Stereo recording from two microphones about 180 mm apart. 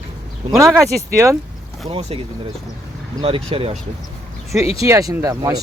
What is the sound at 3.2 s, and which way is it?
Speech, 30° right (ahead or behind).